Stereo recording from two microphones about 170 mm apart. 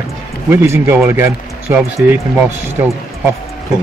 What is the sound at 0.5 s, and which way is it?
Speech, 15° right (ahead or behind).